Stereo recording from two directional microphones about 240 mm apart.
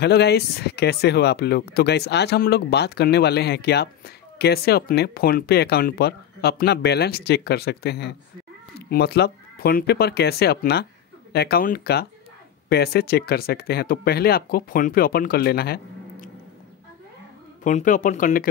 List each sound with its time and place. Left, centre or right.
0.0 s speech: left
17.6 s speech: left